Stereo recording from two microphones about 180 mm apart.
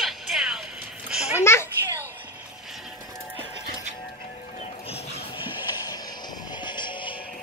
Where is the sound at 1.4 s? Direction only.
15° left (ahead or behind).